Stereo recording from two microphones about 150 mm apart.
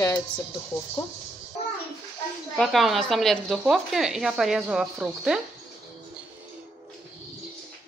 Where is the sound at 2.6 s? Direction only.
Centre (ahead or behind).